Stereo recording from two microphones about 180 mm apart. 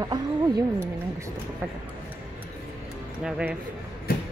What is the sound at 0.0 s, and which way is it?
Speech, 20° right (ahead or behind).